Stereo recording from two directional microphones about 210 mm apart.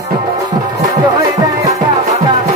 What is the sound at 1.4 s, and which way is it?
Music, 15° right (ahead or behind).